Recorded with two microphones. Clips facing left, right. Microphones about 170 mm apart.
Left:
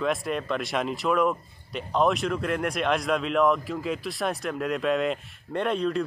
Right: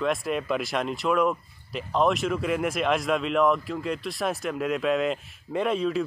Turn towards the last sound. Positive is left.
turn(degrees=-5)  # may be behind; listen again after turning